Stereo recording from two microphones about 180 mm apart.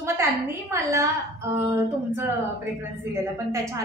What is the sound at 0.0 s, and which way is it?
A woman's voice, 15° right (ahead or behind).